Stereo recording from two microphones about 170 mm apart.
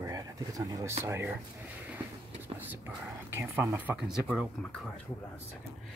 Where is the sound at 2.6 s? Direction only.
10° right (ahead or behind).